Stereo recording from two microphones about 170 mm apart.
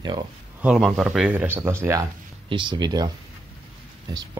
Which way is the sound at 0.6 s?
5° right (ahead or behind).